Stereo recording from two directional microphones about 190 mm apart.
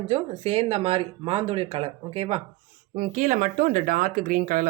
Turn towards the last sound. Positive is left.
turn(degrees=-45)  # may be behind; listen again after turning